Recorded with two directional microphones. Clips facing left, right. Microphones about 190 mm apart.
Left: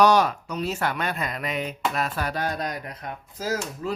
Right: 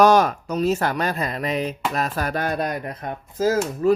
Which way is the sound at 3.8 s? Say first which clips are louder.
Right 15 dB; 55° right (ahead or behind).